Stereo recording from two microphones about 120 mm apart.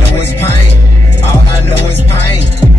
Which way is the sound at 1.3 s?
15° left (ahead or behind).